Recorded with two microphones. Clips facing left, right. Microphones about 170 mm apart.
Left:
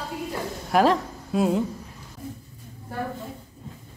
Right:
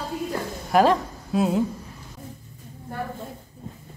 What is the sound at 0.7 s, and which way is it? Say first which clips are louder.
Speech: right 1 dB; centre (ahead or behind).